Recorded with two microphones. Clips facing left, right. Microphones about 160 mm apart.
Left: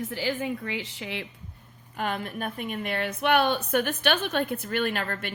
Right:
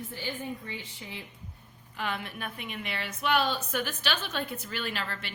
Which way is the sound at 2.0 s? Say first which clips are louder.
Left 5 dB; 45° left (ahead or behind).